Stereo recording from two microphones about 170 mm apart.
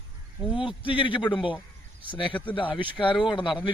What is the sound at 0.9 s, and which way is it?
A man's voice, 30° left (ahead or behind).